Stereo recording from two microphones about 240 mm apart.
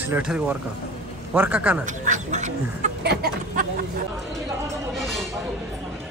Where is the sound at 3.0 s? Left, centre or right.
Right.